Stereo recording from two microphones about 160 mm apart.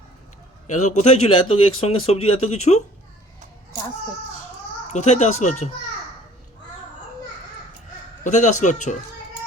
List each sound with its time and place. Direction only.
0.7 s speech: 45° left (ahead or behind)
4.9 s speech: 45° left (ahead or behind)
8.2 s speech: 50° left (ahead or behind)